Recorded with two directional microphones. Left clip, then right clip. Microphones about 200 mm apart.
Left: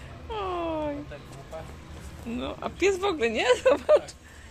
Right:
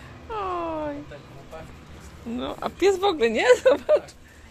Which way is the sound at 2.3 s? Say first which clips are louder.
Right 3 dB; 20° right (ahead or behind).